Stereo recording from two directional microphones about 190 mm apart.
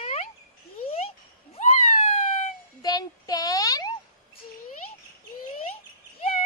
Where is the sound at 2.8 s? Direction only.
20° left (ahead or behind).